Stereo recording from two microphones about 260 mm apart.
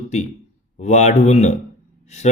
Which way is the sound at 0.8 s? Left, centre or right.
Left.